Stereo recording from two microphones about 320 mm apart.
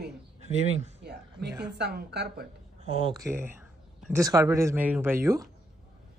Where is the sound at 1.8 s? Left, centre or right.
Right.